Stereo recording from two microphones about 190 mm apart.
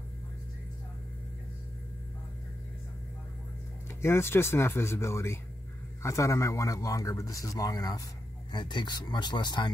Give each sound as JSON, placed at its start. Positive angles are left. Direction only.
{"t": 4.0, "sound": "speech", "side_deg": 15}